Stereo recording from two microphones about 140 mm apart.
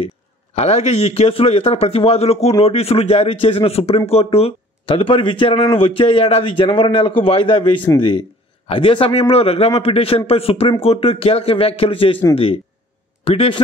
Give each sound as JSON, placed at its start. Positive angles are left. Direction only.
{"t": 0.6, "sound": "a man's voice", "side_deg": 50}
{"t": 13.2, "sound": "a man's voice", "side_deg": 45}